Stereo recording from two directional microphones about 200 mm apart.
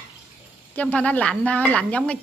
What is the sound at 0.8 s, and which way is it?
Speech, 5° left (ahead or behind).